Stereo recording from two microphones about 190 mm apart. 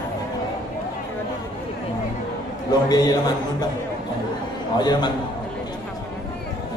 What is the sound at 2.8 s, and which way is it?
Speech, 20° left (ahead or behind).